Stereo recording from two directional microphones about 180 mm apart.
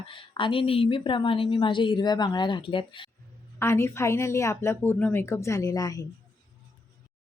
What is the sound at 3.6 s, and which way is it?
A woman's voice, 15° left (ahead or behind).